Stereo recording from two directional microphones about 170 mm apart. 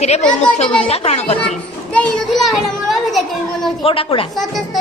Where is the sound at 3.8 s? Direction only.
35° left (ahead or behind).